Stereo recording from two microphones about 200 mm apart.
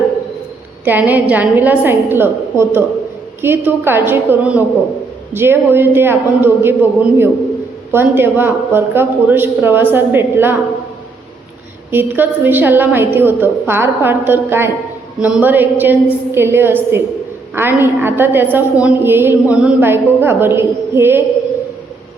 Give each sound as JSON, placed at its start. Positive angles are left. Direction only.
{"t": 0.9, "sound": "a woman's voice", "side_deg": -10}
{"t": 7.9, "sound": "a woman's voice", "side_deg": -10}
{"t": 11.9, "sound": "a woman's voice", "side_deg": -10}